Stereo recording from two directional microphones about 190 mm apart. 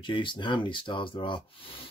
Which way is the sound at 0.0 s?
25° left (ahead or behind).